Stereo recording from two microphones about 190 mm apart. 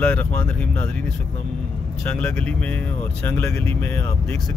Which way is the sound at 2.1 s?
10° left (ahead or behind).